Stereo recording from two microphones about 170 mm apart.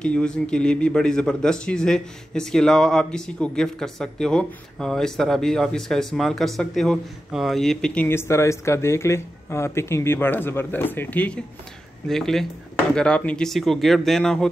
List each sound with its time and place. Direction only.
0.0 s speech: 5° left (ahead or behind)